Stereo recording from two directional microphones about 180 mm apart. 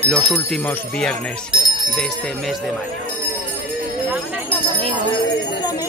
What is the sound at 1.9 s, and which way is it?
Speech, centre (ahead or behind).